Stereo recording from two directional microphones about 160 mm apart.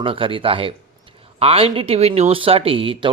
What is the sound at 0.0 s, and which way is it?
Speech, 35° right (ahead or behind).